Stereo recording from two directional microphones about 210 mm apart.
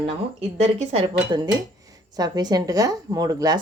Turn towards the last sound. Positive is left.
turn(degrees=-15)  # may be behind; listen again after turning